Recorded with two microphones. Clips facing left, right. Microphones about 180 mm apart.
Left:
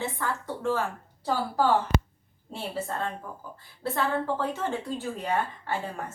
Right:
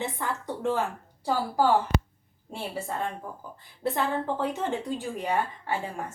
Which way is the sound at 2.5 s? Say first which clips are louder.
Even; 15° right (ahead or behind).